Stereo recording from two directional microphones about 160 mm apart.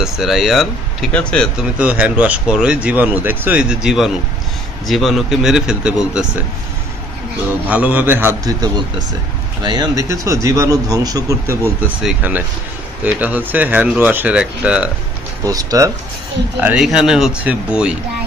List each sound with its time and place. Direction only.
0.0 s speech: centre (ahead or behind)
1.8 s speech: 10° right (ahead or behind)
7.6 s speech: 10° right (ahead or behind)
12.0 s speech: 5° right (ahead or behind)
15.4 s speech: 20° right (ahead or behind)
16.6 s speech: 5° right (ahead or behind)